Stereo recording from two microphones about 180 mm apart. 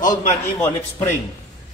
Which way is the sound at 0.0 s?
45° left (ahead or behind).